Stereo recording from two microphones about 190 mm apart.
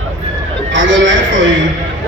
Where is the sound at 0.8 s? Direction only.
75° right (ahead or behind).